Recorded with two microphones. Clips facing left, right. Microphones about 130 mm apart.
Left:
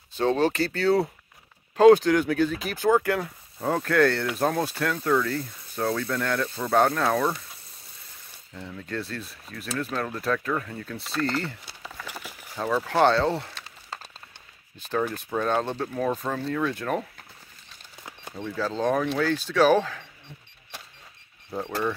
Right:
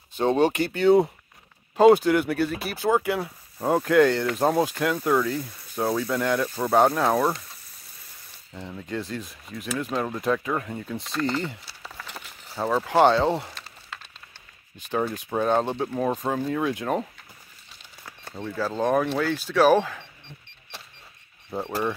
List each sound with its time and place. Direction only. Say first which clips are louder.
0.2 s speech: right 2 dB; 15° right (ahead or behind)
5.8 s speech: right 2 dB; 20° right (ahead or behind)
8.5 s speech: right 1 dB; 15° right (ahead or behind)
11.6 s a sound: left 1 dB; 5° right (ahead or behind)
12.5 s speech: right 2 dB; 15° right (ahead or behind)
14.8 s speech: right 1 dB; 15° right (ahead or behind)
18.3 s speech: right 1 dB; 10° right (ahead or behind)
21.5 s speech: right 1 dB; 5° right (ahead or behind)